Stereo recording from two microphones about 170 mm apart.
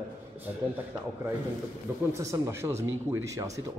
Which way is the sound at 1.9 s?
15° right (ahead or behind).